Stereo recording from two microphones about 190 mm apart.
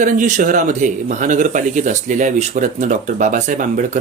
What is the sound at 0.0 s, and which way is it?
A man's voice, 45° right (ahead or behind).